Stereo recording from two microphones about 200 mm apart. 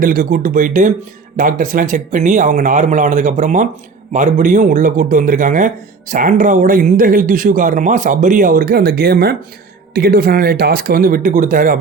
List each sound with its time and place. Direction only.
0.0 s a man's voice: 45° right (ahead or behind)